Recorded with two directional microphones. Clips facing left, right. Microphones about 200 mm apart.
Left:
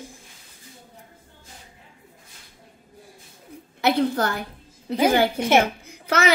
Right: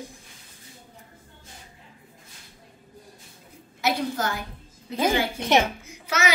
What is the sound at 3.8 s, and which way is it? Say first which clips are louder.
A woman's voice: left 5 dB; 60° left (ahead or behind).